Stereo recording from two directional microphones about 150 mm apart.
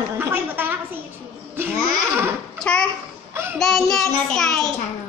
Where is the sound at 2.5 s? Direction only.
5° left (ahead or behind).